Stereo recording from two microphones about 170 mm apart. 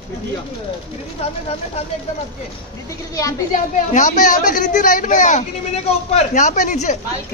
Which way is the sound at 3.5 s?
50° left (ahead or behind).